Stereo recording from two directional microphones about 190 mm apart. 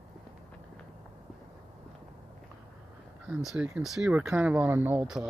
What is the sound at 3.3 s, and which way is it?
Speech, 5° right (ahead or behind).